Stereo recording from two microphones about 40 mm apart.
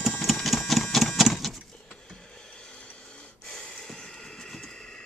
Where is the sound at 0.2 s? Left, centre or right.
Centre.